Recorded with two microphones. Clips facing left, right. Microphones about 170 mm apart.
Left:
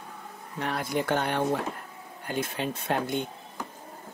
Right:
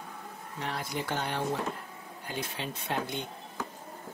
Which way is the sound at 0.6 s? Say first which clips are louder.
Left 6 dB; 60° left (ahead or behind).